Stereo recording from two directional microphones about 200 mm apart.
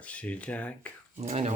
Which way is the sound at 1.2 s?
35° right (ahead or behind).